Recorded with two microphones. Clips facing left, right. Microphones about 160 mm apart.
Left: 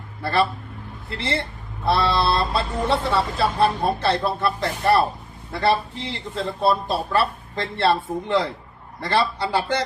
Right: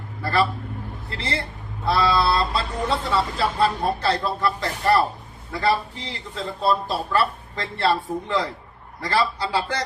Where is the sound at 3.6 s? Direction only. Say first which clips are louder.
Left 1 dB; 25° left (ahead or behind).